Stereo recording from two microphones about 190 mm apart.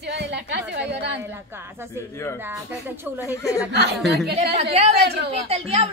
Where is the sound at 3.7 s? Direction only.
60° right (ahead or behind).